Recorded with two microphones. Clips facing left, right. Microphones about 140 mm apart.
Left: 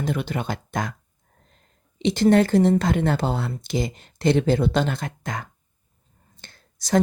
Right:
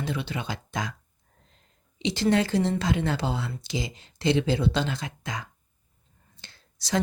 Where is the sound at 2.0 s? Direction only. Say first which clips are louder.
Left 6 dB; 50° left (ahead or behind).